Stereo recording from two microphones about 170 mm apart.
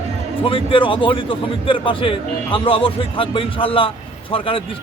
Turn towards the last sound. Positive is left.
turn(degrees=30)  # may be behind; listen again after turning